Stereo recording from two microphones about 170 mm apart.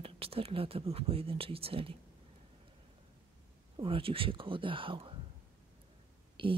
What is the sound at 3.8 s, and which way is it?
Speech, 30° right (ahead or behind).